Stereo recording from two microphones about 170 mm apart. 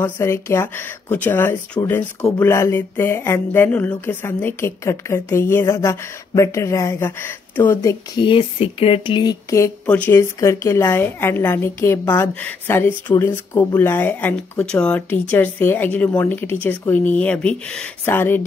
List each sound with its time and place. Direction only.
0.0 s a woman's voice: 15° left (ahead or behind)
8.2 s a woman's voice: 30° left (ahead or behind); by 18.4 s 10° left (ahead or behind)